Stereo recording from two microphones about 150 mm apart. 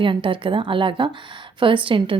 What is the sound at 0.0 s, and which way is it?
A woman's voice, 35° right (ahead or behind).